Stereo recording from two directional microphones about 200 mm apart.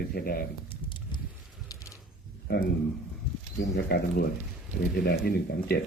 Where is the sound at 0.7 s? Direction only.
25° left (ahead or behind).